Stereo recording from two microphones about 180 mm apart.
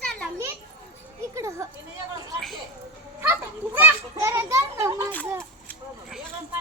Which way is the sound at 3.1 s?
10° right (ahead or behind).